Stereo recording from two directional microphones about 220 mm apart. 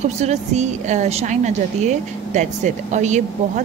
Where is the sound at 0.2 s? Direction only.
30° right (ahead or behind).